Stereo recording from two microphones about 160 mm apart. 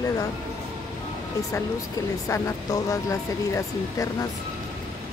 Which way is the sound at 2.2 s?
20° left (ahead or behind).